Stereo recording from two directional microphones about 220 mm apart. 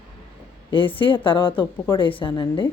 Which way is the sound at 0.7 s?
25° left (ahead or behind).